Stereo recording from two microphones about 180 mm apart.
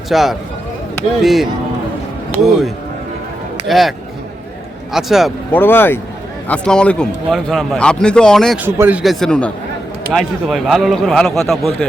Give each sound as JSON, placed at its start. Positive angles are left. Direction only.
{"t": 0.1, "sound": "a man's voice", "side_deg": 0}
{"t": 5.5, "sound": "a man's voice", "side_deg": 10}
{"t": 8.5, "sound": "a man's voice", "side_deg": -10}